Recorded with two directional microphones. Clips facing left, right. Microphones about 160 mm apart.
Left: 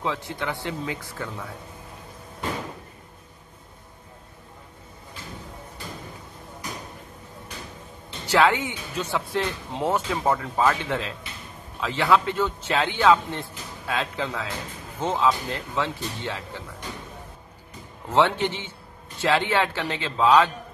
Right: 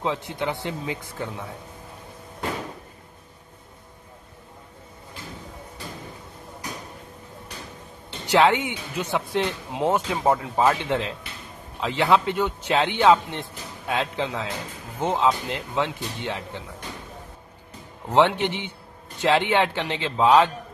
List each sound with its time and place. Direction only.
0.0 s speech: 20° right (ahead or behind)
8.3 s speech: 20° right (ahead or behind)
18.1 s speech: 15° right (ahead or behind)